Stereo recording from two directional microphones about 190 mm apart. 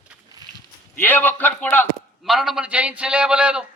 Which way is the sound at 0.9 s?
10° left (ahead or behind).